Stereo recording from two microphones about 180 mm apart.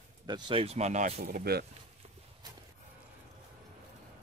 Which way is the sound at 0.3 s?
30° right (ahead or behind).